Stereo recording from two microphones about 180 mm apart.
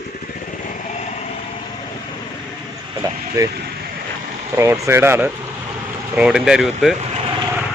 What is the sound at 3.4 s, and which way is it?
Speech, 20° right (ahead or behind).